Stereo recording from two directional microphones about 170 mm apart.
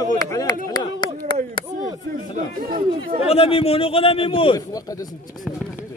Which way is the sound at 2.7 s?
30° right (ahead or behind).